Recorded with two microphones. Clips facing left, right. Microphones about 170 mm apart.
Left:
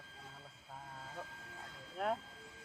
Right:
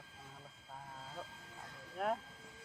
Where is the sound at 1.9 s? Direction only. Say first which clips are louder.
Even; centre (ahead or behind).